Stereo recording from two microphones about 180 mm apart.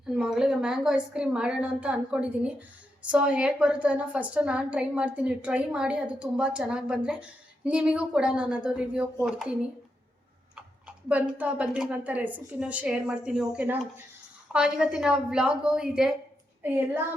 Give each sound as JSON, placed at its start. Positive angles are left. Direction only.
{"t": 0.1, "sound": "a woman's voice", "side_deg": 0}
{"t": 10.5, "sound": "a woman's voice", "side_deg": -5}